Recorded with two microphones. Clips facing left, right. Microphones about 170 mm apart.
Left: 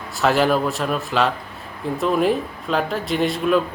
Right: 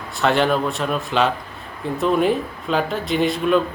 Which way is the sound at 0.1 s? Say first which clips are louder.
Left 1 dB; centre (ahead or behind).